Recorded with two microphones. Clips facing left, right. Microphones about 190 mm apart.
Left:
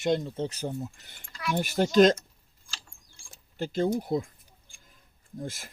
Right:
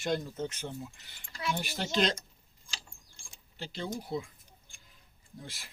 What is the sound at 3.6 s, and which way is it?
Speech, 50° left (ahead or behind).